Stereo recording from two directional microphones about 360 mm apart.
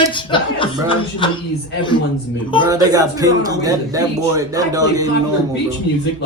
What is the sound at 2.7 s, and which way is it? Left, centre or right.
A man's voice, centre.